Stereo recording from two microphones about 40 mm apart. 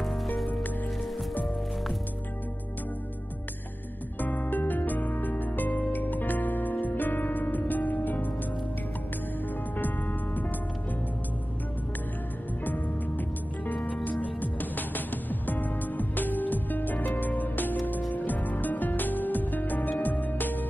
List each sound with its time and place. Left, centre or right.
4.2 s music: left
9.8 s music: left
12.6 s music: left
14.2 s music: left